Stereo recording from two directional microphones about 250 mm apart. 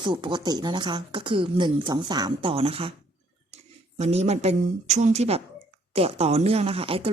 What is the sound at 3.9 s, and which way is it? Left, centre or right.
Speech, right.